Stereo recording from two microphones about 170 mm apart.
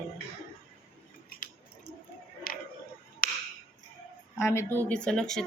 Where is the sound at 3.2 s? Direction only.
55° left (ahead or behind).